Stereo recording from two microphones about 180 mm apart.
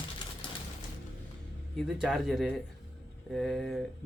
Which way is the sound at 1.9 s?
Centre (ahead or behind).